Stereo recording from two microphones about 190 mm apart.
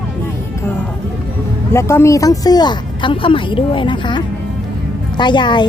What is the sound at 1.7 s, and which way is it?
A woman's voice, 15° left (ahead or behind).